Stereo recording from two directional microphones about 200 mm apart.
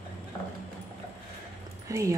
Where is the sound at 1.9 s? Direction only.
15° right (ahead or behind).